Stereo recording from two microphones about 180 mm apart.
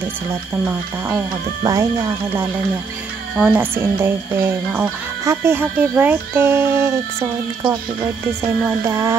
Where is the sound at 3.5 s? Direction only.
15° right (ahead or behind).